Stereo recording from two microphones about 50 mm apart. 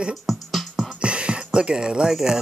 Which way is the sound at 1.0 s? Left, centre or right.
Right.